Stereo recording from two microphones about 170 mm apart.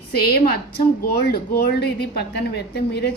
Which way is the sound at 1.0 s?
65° left (ahead or behind).